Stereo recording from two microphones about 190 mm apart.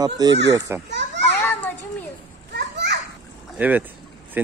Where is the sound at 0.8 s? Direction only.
65° right (ahead or behind).